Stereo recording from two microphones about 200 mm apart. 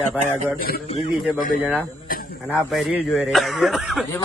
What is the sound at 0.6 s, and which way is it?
Speech, 45° left (ahead or behind).